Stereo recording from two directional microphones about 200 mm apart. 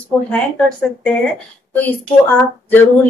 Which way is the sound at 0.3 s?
5° left (ahead or behind).